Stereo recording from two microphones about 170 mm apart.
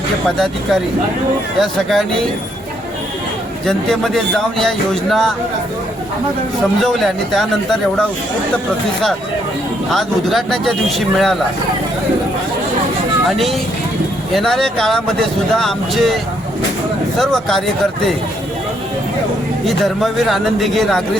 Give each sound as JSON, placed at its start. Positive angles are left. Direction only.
{"t": 0.3, "sound": "speech", "side_deg": 5}
{"t": 3.7, "sound": "speech", "side_deg": 0}
{"t": 6.7, "sound": "speech", "side_deg": 0}
{"t": 9.9, "sound": "speech", "side_deg": 0}
{"t": 13.3, "sound": "speech", "side_deg": 0}
{"t": 17.2, "sound": "speech", "side_deg": 0}
{"t": 19.6, "sound": "speech", "side_deg": 0}